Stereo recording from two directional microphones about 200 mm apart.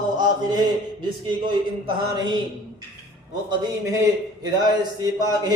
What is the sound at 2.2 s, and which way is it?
Speech, 20° right (ahead or behind).